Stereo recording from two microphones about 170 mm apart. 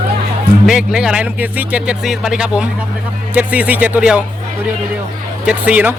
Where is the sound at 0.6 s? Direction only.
5° right (ahead or behind).